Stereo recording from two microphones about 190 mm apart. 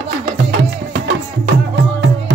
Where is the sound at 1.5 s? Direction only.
80° right.